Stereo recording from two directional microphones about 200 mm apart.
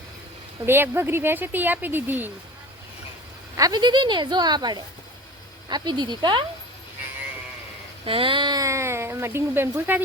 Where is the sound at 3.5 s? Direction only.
20° right (ahead or behind).